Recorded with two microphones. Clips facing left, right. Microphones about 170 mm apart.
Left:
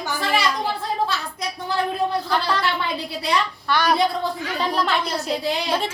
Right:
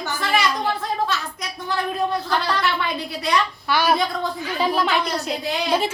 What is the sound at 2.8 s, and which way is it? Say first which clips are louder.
Speech: even; 30° left (ahead or behind).